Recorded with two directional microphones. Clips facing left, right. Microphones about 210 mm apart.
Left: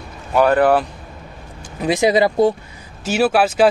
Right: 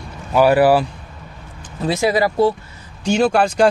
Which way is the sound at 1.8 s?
15° left (ahead or behind).